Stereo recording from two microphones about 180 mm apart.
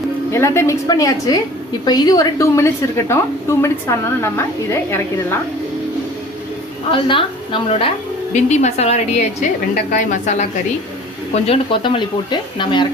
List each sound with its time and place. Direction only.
0.3 s a woman's voice: 15° left (ahead or behind)
6.9 s speech: 30° left (ahead or behind)
11.4 s speech: 30° left (ahead or behind)